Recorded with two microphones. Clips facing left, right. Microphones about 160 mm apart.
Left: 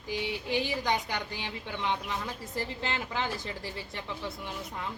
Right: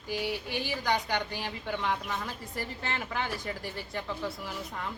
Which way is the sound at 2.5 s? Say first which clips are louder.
Left 2 dB; 25° left (ahead or behind).